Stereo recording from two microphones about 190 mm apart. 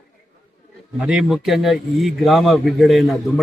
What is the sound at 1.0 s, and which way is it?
A man's voice, 5° right (ahead or behind).